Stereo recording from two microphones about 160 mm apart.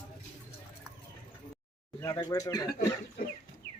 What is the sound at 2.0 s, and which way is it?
Speech, 20° left (ahead or behind).